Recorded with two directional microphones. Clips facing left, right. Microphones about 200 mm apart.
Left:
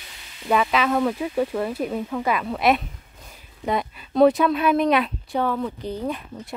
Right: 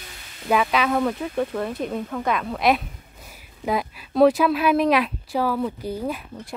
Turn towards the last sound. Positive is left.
turn(degrees=-5)  # may be behind; listen again after turning